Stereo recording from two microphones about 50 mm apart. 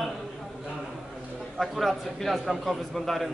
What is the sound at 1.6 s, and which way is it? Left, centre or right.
A man's voice, centre.